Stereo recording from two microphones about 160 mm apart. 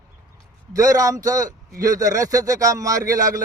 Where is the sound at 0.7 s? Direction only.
20° right (ahead or behind).